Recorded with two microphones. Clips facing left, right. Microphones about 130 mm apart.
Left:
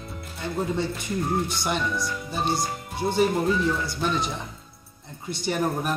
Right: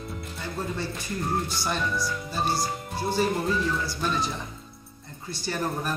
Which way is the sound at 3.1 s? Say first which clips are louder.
Left 3 dB; 20° left (ahead or behind).